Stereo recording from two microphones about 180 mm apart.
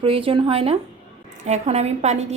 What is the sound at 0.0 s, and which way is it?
Speech, 30° right (ahead or behind).